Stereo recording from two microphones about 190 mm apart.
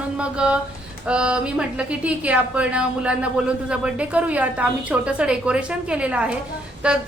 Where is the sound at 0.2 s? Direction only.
5° right (ahead or behind).